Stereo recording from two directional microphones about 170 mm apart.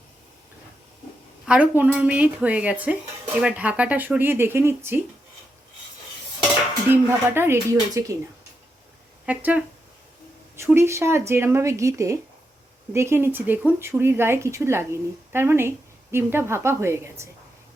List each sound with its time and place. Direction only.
1.5 s speech: 10° right (ahead or behind)
6.8 s speech: 15° right (ahead or behind)
9.2 s speech: 10° right (ahead or behind)